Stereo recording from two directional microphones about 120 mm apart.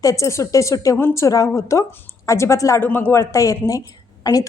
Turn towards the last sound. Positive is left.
turn(degrees=30)  # may be behind; listen again after turning